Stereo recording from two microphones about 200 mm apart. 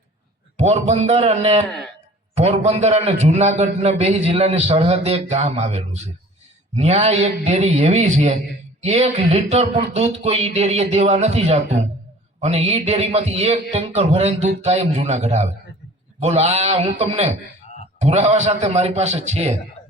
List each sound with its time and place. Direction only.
0.5 s a man's voice: 35° right (ahead or behind)